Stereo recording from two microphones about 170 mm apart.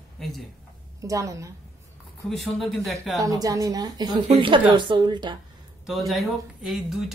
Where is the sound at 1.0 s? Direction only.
20° right (ahead or behind).